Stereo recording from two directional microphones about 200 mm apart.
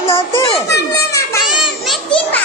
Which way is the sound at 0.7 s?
15° left (ahead or behind).